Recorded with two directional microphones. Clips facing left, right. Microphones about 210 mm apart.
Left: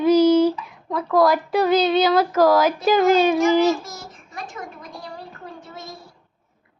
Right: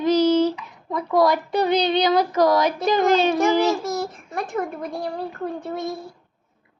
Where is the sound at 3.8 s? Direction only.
60° right (ahead or behind).